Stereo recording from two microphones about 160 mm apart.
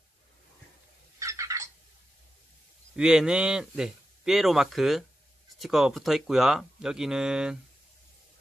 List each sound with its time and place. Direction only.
1.2 s fowl: 20° right (ahead or behind)
3.0 s speech: 5° right (ahead or behind)